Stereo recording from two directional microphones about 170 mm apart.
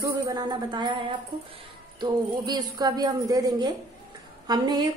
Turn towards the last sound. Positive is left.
turn(degrees=-25)  # may be behind; listen again after turning